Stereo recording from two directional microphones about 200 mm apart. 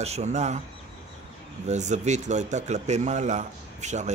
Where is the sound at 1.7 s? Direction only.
35° right (ahead or behind).